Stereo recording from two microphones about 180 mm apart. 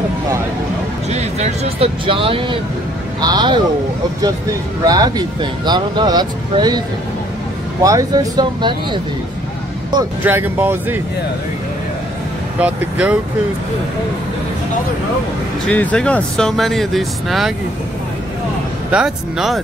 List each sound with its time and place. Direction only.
1.1 s speech: 35° right (ahead or behind)
4.8 s speech: 20° right (ahead or behind)
7.8 s speech: 20° right (ahead or behind)
10.2 s speech: 10° right (ahead or behind)
12.5 s speech: 10° right (ahead or behind)
15.7 s speech: 5° left (ahead or behind)
18.9 s speech: 5° right (ahead or behind)